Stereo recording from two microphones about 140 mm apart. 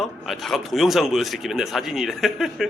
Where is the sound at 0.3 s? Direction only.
Centre (ahead or behind).